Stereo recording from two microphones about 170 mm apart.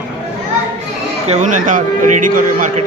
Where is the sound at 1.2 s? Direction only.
45° right (ahead or behind).